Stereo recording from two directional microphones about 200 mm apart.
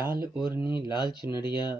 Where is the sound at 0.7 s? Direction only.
20° left (ahead or behind).